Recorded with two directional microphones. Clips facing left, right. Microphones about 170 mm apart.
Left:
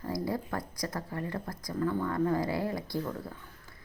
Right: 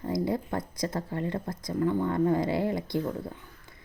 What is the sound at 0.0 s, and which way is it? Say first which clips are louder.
Speech: right 4 dB; 20° right (ahead or behind).